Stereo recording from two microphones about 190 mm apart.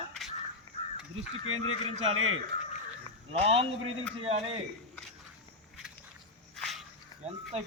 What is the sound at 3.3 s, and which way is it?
Speech, 30° right (ahead or behind).